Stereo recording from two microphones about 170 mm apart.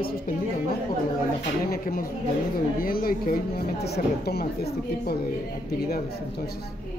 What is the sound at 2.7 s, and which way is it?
Speech, 60° left (ahead or behind).